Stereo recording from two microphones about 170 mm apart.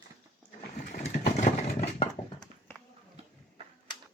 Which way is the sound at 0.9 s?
45° left (ahead or behind).